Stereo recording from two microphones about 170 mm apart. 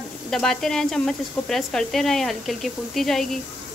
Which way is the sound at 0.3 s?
Centre (ahead or behind).